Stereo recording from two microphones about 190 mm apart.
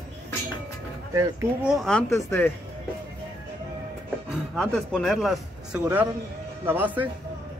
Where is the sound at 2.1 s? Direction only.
15° left (ahead or behind).